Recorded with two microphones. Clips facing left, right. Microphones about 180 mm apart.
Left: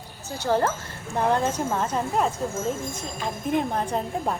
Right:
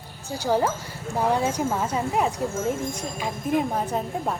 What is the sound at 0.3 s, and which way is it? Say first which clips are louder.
A woman's voice: even; 10° right (ahead or behind).